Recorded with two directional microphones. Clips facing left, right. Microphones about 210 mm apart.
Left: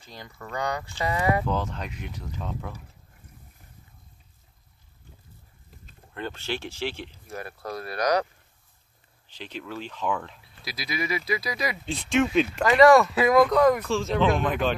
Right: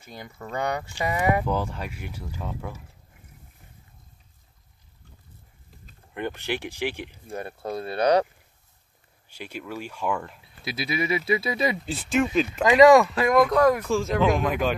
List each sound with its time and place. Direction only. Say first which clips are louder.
0.2 s speech: right 2 dB; 20° right (ahead or behind)
6.1 s speech: right 3 dB; 15° right (ahead or behind)
7.2 s speech: right 4 dB; 25° right (ahead or behind)
9.3 s speech: right 1 dB; 10° right (ahead or behind)
10.6 s speech: right 4 dB; 25° right (ahead or behind)
11.8 s speech: even; 5° right (ahead or behind)
12.6 s speech: right 2 dB; 15° right (ahead or behind)
13.1 s speech: left 1 dB; 5° left (ahead or behind)